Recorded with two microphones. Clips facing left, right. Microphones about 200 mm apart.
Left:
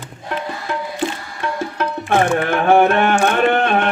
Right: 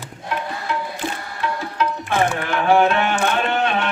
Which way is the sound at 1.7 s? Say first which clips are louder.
Left 4 dB; 55° left (ahead or behind).